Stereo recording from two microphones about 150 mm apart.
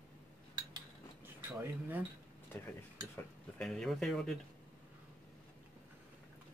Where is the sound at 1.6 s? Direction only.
10° right (ahead or behind).